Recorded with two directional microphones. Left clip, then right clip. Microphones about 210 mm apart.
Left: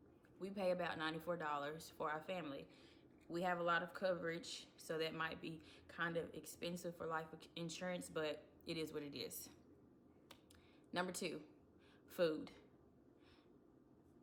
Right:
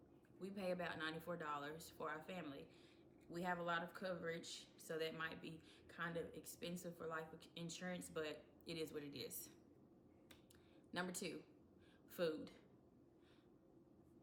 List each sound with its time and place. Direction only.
0.3 s speech: 20° left (ahead or behind)
10.9 s speech: 20° left (ahead or behind)